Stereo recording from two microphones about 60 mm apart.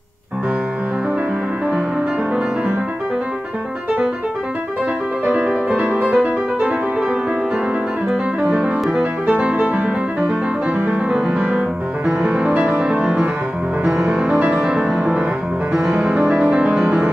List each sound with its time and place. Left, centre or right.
5.4 s music: centre
8.4 s music: right